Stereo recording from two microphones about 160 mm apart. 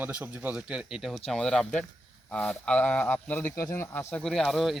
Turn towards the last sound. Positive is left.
turn(degrees=0)  # may be behind; listen again after turning